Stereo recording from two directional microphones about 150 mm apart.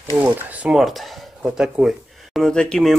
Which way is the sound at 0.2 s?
10° right (ahead or behind).